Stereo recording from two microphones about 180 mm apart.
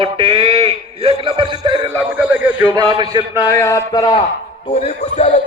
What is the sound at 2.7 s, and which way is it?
Speech, 25° right (ahead or behind).